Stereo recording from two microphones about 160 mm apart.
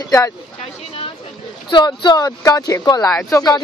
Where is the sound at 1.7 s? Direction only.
25° left (ahead or behind).